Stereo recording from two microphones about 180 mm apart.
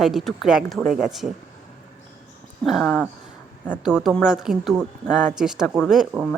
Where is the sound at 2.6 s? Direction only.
5° left (ahead or behind).